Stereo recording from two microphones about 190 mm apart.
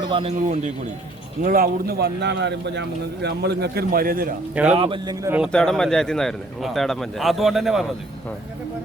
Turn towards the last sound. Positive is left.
turn(degrees=0)  # may be behind; listen again after turning